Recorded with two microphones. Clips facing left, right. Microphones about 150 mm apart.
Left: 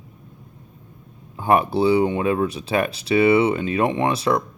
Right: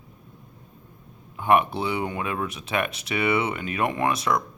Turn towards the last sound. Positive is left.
turn(degrees=30)  # may be behind; listen again after turning